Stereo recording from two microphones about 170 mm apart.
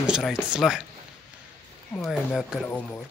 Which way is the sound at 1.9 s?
Centre (ahead or behind).